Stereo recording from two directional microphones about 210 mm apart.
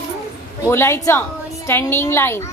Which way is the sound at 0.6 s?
15° left (ahead or behind).